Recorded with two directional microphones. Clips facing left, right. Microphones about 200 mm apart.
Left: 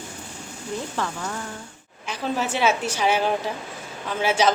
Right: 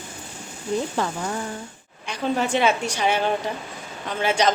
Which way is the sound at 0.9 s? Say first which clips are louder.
Right 3 dB; 20° right (ahead or behind).